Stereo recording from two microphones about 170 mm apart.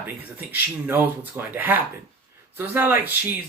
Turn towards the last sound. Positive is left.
turn(degrees=-10)  # may be behind; listen again after turning